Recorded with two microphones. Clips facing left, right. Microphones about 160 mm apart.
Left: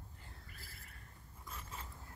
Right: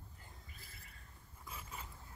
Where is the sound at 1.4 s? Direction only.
5° right (ahead or behind).